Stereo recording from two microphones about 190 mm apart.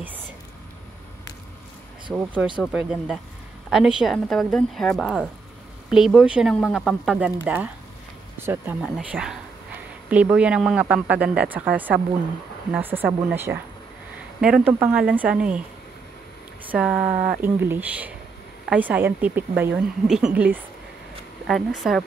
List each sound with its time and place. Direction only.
2.6 s a woman's voice: 5° right (ahead or behind)
16.7 s a woman's voice: 5° right (ahead or behind)
17.0 s speech: 40° right (ahead or behind)
17.4 s a woman's voice: 10° right (ahead or behind)